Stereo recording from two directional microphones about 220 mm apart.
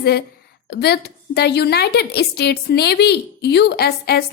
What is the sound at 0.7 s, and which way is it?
A woman's voice, 50° left (ahead or behind).